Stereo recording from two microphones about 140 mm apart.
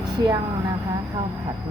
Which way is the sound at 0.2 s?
30° right (ahead or behind).